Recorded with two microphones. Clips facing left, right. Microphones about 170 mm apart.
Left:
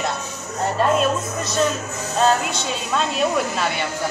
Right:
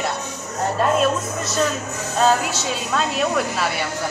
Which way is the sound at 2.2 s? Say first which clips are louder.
Even; 5° right (ahead or behind).